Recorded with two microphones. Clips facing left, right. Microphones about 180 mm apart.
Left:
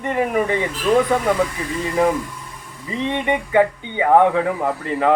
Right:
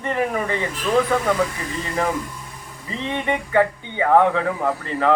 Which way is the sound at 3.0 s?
20° left (ahead or behind).